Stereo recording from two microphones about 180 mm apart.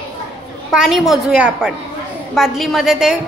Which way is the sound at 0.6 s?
Centre (ahead or behind).